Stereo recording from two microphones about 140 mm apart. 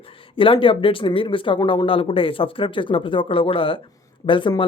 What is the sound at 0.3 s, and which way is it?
Speech, 40° left (ahead or behind).